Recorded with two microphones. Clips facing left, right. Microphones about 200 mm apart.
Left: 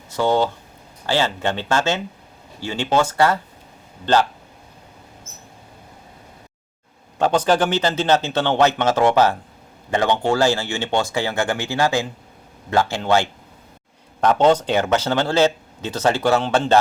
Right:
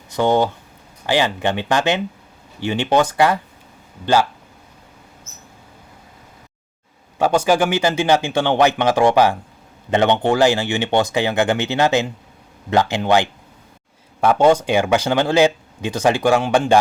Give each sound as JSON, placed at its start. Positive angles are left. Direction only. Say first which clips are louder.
{"t": 0.1, "sound": "speech", "louder": "right 2 dB", "side_deg": -15}
{"t": 7.2, "sound": "speech", "louder": "right 1 dB", "side_deg": -10}